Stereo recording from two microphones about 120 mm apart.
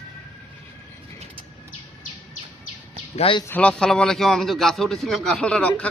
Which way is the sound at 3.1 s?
50° left (ahead or behind).